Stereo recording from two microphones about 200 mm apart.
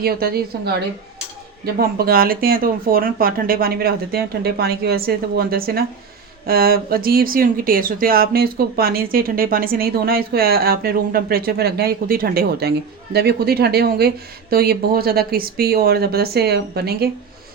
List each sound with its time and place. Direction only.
0.0 s speech: 50° right (ahead or behind)